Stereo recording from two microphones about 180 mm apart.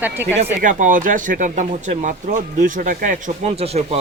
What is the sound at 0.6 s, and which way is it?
Speech, 45° right (ahead or behind).